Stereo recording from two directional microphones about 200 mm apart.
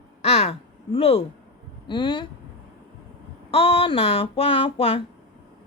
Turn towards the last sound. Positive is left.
turn(degrees=30)  # may be behind; listen again after turning